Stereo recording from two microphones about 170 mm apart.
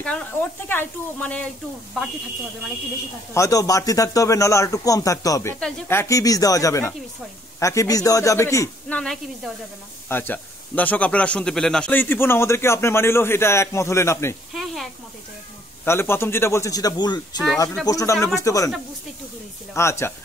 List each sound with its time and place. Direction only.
0.0 s speech: 5° left (ahead or behind)
3.3 s a man's voice: 20° left (ahead or behind)
8.8 s a woman's voice: 5° left (ahead or behind)
14.5 s snake: centre (ahead or behind)
15.8 s a man's voice: 15° left (ahead or behind)
19.7 s speech: 15° left (ahead or behind)